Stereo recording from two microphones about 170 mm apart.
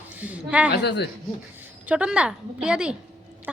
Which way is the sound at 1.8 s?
5° right (ahead or behind).